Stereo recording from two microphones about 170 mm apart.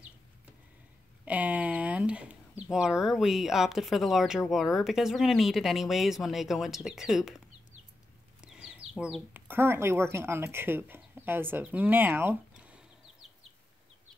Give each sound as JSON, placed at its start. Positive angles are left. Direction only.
{"t": 1.2, "sound": "a sound", "side_deg": -10}
{"t": 4.5, "sound": "speech", "side_deg": 0}
{"t": 8.4, "sound": "bird", "side_deg": -5}
{"t": 9.3, "sound": "speech", "side_deg": -15}